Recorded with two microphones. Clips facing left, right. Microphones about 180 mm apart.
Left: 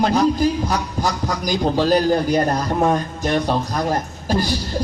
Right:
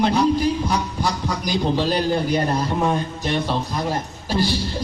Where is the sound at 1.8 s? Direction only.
40° left (ahead or behind).